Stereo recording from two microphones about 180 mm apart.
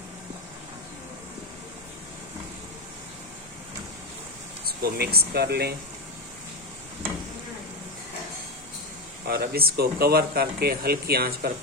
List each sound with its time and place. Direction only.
4.6 s speech: 60° right (ahead or behind)
9.2 s speech: 60° right (ahead or behind)